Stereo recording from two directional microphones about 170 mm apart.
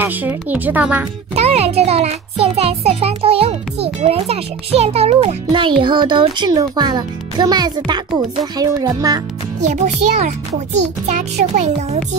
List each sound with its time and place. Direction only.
0.0 s speech: 10° right (ahead or behind)
1.3 s music: 40° right (ahead or behind)
4.0 s a child's voice: 40° right (ahead or behind); by 9.2 s 20° right (ahead or behind)
9.6 s a child's voice: 45° right (ahead or behind)
11.5 s music: 40° right (ahead or behind)